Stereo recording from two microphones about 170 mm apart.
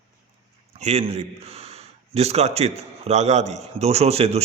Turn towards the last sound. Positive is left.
turn(degrees=-35)  # may be behind; listen again after turning